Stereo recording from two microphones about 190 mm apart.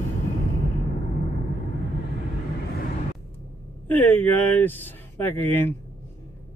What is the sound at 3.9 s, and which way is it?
Speech, 10° left (ahead or behind).